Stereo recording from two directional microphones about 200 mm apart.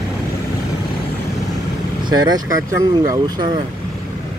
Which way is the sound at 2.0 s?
20° right (ahead or behind).